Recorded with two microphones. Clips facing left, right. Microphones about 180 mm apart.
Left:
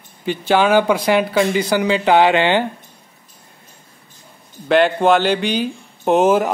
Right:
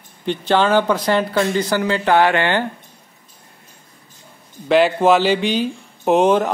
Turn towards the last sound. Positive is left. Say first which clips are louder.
# even
turn(degrees=5)  # may be behind; listen again after turning